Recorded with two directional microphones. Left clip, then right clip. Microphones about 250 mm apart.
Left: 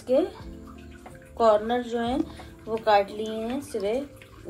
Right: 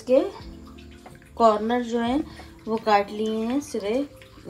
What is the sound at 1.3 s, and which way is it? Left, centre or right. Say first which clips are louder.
Speech: right 1 dB; right.